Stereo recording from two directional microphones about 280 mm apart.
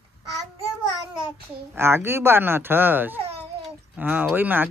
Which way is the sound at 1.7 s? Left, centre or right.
Centre.